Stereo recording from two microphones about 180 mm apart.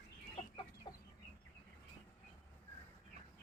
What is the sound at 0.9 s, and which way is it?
Chicken, 25° left (ahead or behind).